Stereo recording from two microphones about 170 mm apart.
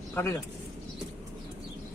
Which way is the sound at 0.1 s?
15° left (ahead or behind).